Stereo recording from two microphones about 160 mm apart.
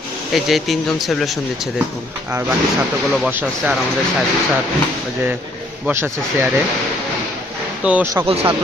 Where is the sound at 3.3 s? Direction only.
10° right (ahead or behind).